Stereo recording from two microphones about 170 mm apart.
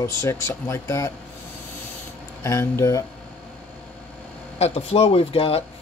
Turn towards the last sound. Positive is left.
turn(degrees=35)  # may be behind; listen again after turning